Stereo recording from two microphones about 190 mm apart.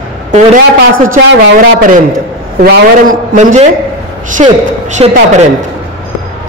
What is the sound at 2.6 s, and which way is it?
A man's voice, 50° right (ahead or behind).